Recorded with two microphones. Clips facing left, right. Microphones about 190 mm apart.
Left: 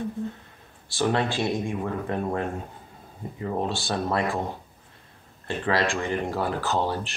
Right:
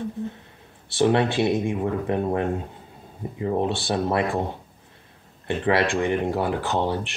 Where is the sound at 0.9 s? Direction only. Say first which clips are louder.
Right 5 dB; 25° right (ahead or behind).